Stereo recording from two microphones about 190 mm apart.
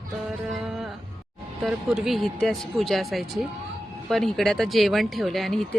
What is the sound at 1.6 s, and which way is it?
Speech, centre (ahead or behind).